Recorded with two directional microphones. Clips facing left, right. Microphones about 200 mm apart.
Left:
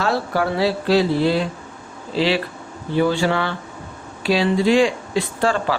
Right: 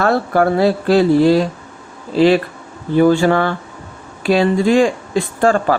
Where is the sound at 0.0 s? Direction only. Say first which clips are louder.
Right 6 dB; 55° right (ahead or behind).